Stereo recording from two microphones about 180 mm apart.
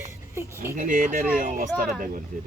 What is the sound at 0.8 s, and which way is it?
Speech, 45° right (ahead or behind).